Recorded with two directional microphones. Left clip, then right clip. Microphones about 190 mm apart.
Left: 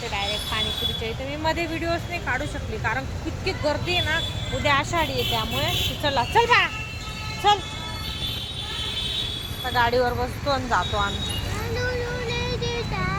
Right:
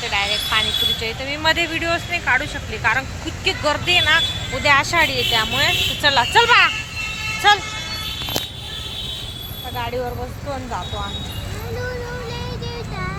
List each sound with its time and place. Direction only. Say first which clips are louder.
0.1 s speech: right 8 dB; centre (ahead or behind)
9.7 s speech: left 5 dB; 25° left (ahead or behind)
10.5 s speech: left 5 dB; 15° left (ahead or behind)